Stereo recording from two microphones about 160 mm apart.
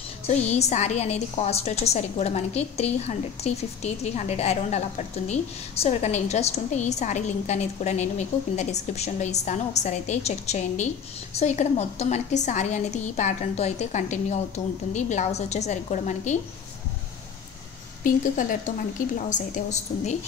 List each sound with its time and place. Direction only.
0.3 s a woman's voice: 45° left (ahead or behind)
18.0 s a woman's voice: 55° left (ahead or behind)